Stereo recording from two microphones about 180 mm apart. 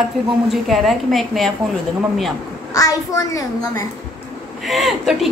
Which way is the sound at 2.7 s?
20° left (ahead or behind).